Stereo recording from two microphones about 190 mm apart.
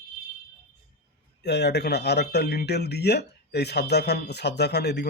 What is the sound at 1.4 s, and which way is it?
Speech, 60° left (ahead or behind).